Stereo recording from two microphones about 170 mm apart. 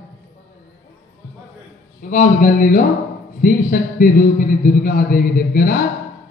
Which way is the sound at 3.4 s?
55° left (ahead or behind).